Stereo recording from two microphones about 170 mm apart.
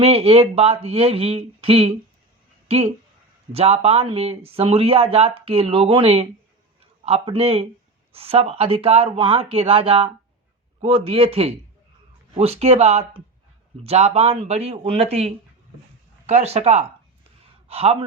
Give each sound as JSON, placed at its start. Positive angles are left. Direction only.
{"t": 0.0, "sound": "a man's voice", "side_deg": -35}